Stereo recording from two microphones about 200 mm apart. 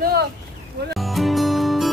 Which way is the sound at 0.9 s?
Centre (ahead or behind).